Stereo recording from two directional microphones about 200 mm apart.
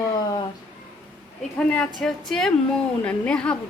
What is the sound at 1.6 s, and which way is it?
A woman's voice, 5° left (ahead or behind).